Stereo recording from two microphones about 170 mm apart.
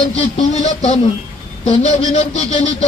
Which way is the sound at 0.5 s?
40° left (ahead or behind).